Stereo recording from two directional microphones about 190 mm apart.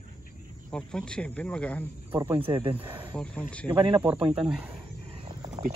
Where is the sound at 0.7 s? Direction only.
5° left (ahead or behind).